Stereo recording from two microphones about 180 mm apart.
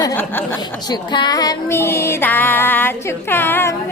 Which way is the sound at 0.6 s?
25° left (ahead or behind).